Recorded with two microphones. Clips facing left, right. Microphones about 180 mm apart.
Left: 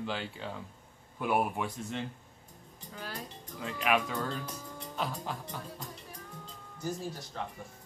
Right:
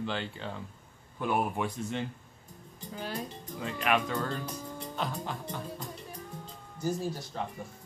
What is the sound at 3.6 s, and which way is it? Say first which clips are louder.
A man's voice: right 1 dB; 5° left (ahead or behind).